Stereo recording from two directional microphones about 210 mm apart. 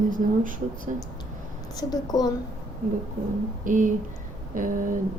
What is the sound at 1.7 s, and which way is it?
Speech, 20° left (ahead or behind).